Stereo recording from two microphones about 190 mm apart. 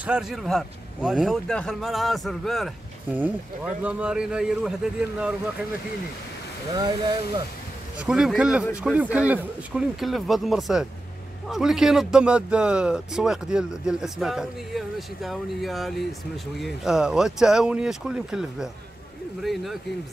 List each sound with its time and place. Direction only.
0.0 s a man's voice: 5° right (ahead or behind)
6.7 s speech: 25° right (ahead or behind)
8.0 s a man's voice: 5° right (ahead or behind)